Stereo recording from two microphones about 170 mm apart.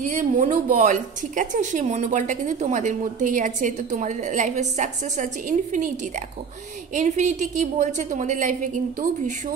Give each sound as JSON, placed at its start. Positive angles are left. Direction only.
{"t": 0.0, "sound": "a woman's voice", "side_deg": -45}
{"t": 7.0, "sound": "a woman's voice", "side_deg": -45}